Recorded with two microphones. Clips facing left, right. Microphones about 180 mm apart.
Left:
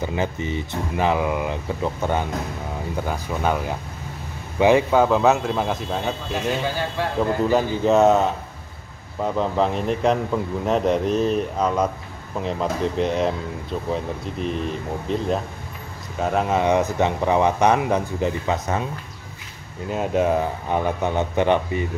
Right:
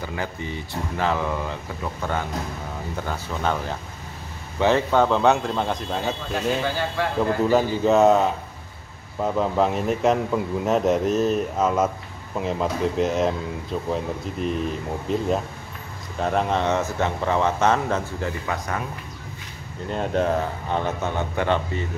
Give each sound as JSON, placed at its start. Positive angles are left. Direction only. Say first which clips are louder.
{"t": 0.0, "sound": "a man's voice", "louder": "left 5 dB", "side_deg": 20}
{"t": 19.9, "sound": "speech", "louder": "left 2 dB", "side_deg": 5}